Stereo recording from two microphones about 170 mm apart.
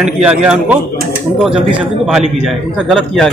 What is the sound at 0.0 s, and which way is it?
Speech, 5° right (ahead or behind).